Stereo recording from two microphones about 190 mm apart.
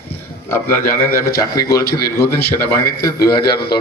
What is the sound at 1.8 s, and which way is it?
Speech, 55° left (ahead or behind).